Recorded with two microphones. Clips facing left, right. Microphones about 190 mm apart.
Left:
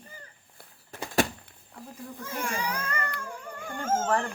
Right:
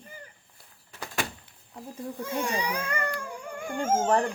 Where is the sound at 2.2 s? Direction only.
20° right (ahead or behind).